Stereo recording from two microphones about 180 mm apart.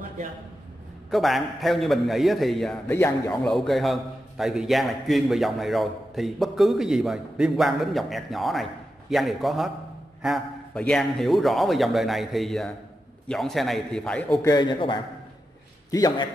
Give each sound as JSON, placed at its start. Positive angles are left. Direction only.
{"t": 1.1, "sound": "a man's voice", "side_deg": 0}
{"t": 2.9, "sound": "a man's voice", "side_deg": 15}
{"t": 3.4, "sound": "a man's voice", "side_deg": 0}
{"t": 14.4, "sound": "a man's voice", "side_deg": 25}